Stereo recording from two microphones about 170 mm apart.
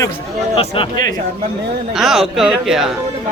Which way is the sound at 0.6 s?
30° left (ahead or behind).